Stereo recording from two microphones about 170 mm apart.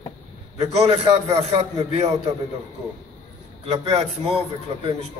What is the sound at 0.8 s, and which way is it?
Speech, 35° right (ahead or behind).